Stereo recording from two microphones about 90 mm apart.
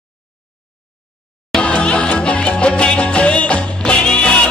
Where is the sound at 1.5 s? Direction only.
10° left (ahead or behind).